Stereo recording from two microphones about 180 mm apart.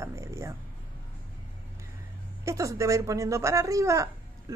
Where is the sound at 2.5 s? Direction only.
15° right (ahead or behind).